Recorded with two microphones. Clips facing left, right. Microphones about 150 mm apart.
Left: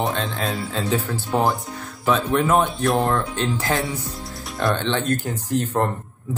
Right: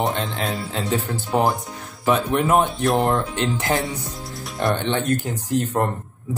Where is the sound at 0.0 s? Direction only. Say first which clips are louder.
Right 1 dB; 20° right (ahead or behind).